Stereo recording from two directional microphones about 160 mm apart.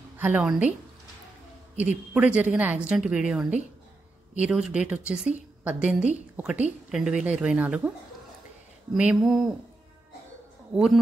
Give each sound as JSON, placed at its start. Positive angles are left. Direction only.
{"t": 0.2, "sound": "a woman's voice", "side_deg": -10}
{"t": 1.8, "sound": "a woman's voice", "side_deg": -10}
{"t": 8.9, "sound": "speech", "side_deg": -5}